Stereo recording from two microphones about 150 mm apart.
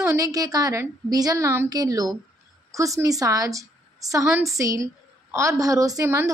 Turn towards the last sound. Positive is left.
turn(degrees=-20)  # may be behind; listen again after turning